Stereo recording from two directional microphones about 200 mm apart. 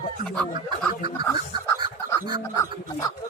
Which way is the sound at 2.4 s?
15° left (ahead or behind).